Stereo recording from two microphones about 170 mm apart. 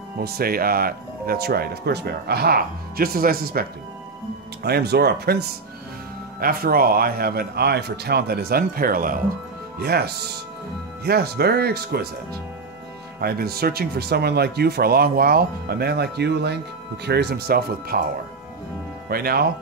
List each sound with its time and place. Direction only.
0.2 s speech: 60° right (ahead or behind)
4.6 s speech: 70° right (ahead or behind)
13.2 s speech: 65° right (ahead or behind)
19.0 s speech: 60° right (ahead or behind)